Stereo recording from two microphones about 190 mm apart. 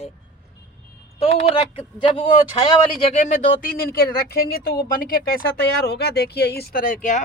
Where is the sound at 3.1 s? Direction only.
40° left (ahead or behind).